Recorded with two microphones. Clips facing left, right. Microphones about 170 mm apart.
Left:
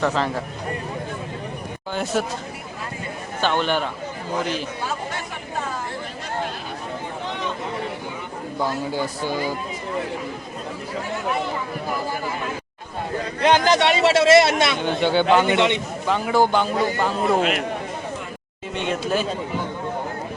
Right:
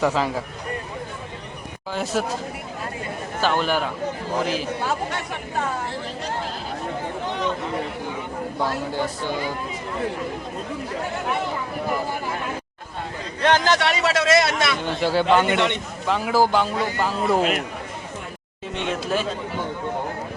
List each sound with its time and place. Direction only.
0.0 s speech: 5° right (ahead or behind)
1.9 s a man's voice: centre (ahead or behind)
3.4 s a man's voice: 5° right (ahead or behind)
8.9 s speech: 5° left (ahead or behind)
13.4 s speech: 15° left (ahead or behind)
14.8 s a man's voice: centre (ahead or behind)
15.4 s speech: 10° left (ahead or behind)
16.0 s a man's voice: centre (ahead or behind)
18.7 s a man's voice: centre (ahead or behind)